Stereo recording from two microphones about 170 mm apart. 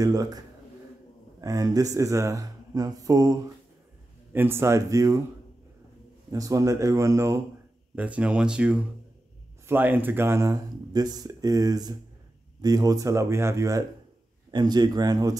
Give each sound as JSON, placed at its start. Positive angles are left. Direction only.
{"t": 0.0, "sound": "speech", "side_deg": -20}
{"t": 1.4, "sound": "speech", "side_deg": -20}
{"t": 6.3, "sound": "speech", "side_deg": -20}